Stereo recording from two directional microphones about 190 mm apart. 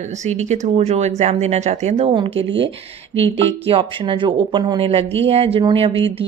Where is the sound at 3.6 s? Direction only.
25° right (ahead or behind).